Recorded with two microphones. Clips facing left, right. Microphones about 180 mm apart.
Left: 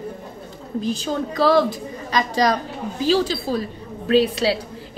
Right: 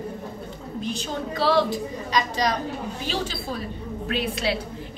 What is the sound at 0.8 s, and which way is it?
A woman's voice, 35° left (ahead or behind).